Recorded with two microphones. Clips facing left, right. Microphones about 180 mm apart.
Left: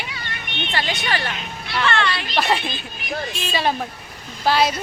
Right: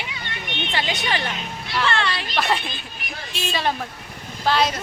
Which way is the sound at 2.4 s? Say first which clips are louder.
Left 2 dB; 5° left (ahead or behind).